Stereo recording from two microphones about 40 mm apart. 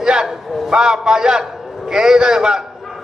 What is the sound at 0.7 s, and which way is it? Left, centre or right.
A man's voice, centre.